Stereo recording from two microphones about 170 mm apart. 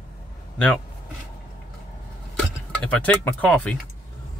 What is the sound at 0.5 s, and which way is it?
Speech, 5° left (ahead or behind).